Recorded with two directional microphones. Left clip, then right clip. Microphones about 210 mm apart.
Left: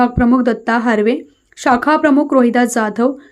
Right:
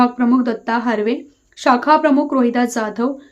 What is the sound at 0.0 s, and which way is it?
A woman's voice, 20° left (ahead or behind).